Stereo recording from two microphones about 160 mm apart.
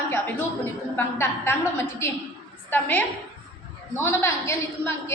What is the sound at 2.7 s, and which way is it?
Speech, 10° left (ahead or behind).